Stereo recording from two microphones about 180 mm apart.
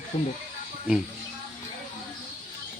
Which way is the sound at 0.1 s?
35° left (ahead or behind).